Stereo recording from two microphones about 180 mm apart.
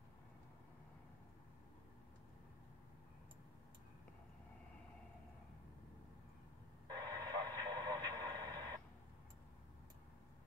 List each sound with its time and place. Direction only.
6.9 s radio: 25° right (ahead or behind)